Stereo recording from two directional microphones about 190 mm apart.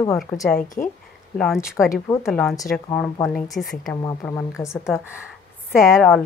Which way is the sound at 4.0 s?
15° left (ahead or behind).